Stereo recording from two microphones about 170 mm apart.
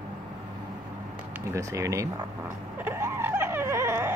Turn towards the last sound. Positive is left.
turn(degrees=-15)  # may be behind; listen again after turning